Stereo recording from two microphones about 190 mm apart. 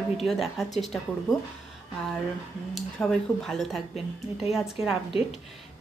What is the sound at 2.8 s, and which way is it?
A woman's voice, centre (ahead or behind).